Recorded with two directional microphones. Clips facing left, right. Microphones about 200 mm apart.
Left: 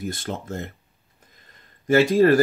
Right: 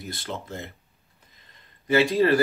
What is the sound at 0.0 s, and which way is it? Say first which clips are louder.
Speech: left 5 dB; 45° left (ahead or behind).